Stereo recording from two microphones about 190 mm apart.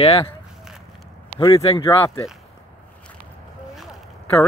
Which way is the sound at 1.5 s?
30° left (ahead or behind).